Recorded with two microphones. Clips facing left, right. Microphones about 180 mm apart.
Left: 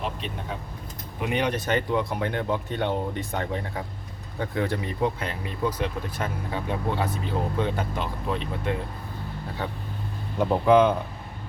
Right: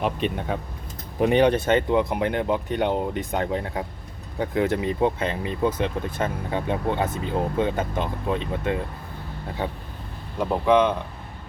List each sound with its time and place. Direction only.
0.0 s speech: 60° right (ahead or behind)
1.2 s speech: 30° right (ahead or behind)
10.5 s speech: 5° left (ahead or behind)